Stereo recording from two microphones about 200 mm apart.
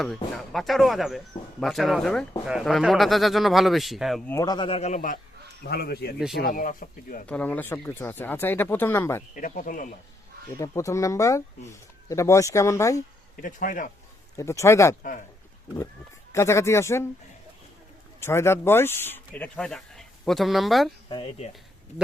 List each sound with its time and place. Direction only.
0.0 s speech: centre (ahead or behind)
4.3 s speech: 15° left (ahead or behind)
4.9 s speech: 45° left (ahead or behind)
7.3 s speech: 5° left (ahead or behind)
9.3 s speech: 40° left (ahead or behind)
10.6 s speech: 15° left (ahead or behind)
13.3 s speech: 45° left (ahead or behind)
14.3 s speech: 15° left (ahead or behind)
16.3 s speech: 15° left (ahead or behind)
18.2 s speech: 10° left (ahead or behind)
21.1 s speech: 30° left (ahead or behind)